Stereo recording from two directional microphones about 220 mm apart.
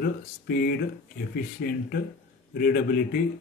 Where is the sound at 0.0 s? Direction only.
45° left (ahead or behind).